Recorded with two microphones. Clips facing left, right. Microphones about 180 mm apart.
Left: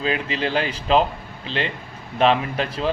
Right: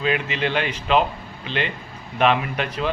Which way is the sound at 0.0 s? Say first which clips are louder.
Right 1 dB; 35° left (ahead or behind).